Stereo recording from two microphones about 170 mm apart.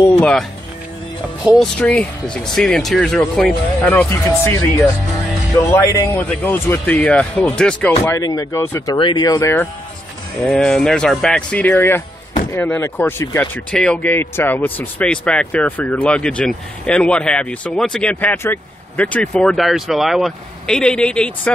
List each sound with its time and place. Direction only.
0.2 s music: 5° left (ahead or behind)
1.4 s speech: 5° right (ahead or behind)
1.8 s speech: 5° left (ahead or behind)
8.0 s speech: 20° left (ahead or behind)
10.4 s speech: 5° left (ahead or behind)